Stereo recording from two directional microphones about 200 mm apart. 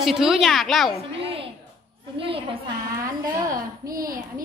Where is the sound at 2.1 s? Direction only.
30° right (ahead or behind).